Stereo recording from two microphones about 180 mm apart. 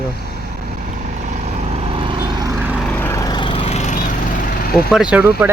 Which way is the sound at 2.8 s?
10° left (ahead or behind).